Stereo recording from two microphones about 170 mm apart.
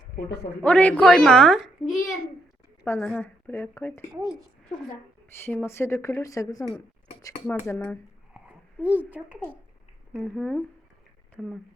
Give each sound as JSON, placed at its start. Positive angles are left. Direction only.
{"t": 0.6, "sound": "a woman's voice", "side_deg": 10}
{"t": 2.8, "sound": "speech", "side_deg": 10}
{"t": 5.5, "sound": "speech", "side_deg": 10}
{"t": 7.4, "sound": "speech", "side_deg": 10}
{"t": 9.0, "sound": "a woman's voice", "side_deg": -10}
{"t": 10.1, "sound": "a woman's voice", "side_deg": 0}